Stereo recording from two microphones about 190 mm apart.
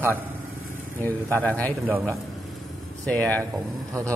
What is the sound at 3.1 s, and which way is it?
Speech, 5° left (ahead or behind).